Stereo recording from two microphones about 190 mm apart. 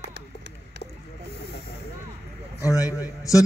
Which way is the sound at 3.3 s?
15° left (ahead or behind).